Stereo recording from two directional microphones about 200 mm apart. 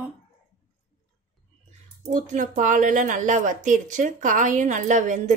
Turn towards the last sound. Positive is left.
turn(degrees=-40)  # may be behind; listen again after turning